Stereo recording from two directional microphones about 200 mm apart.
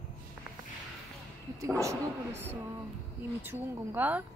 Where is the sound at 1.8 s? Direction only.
10° right (ahead or behind).